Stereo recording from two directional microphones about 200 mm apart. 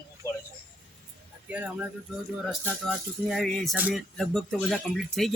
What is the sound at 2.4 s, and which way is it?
Music, centre (ahead or behind).